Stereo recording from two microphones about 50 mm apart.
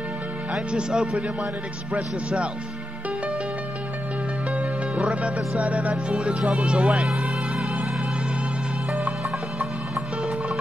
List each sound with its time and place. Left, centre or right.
0.7 s a man's voice: centre
4.9 s music: right
5.6 s a man's voice: right
6.1 s speech: centre